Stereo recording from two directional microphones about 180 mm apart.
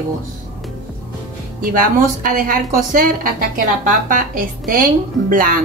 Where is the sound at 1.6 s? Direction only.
50° right (ahead or behind).